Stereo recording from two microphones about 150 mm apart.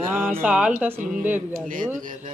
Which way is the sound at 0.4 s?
5° right (ahead or behind).